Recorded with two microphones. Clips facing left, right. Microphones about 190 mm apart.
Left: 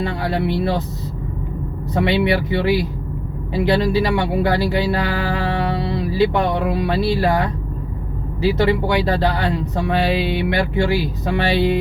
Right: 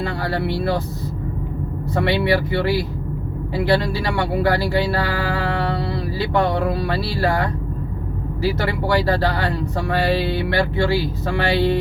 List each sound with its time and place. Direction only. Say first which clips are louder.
0.0 s speech: left 2 dB; 20° left (ahead or behind)
2.0 s speech: left 1 dB; 20° left (ahead or behind)